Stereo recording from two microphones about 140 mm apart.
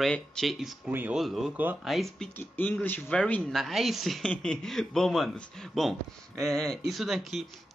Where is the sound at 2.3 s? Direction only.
15° left (ahead or behind).